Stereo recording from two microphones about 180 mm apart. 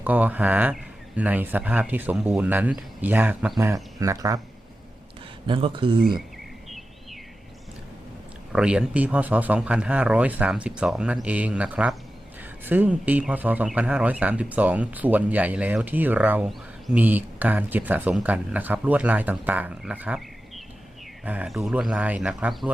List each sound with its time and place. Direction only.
0.0 s speech: 10° right (ahead or behind)
5.5 s speech: 30° right (ahead or behind)
6.7 s a sound: centre (ahead or behind)
8.5 s speech: 5° right (ahead or behind)
21.2 s speech: 5° right (ahead or behind)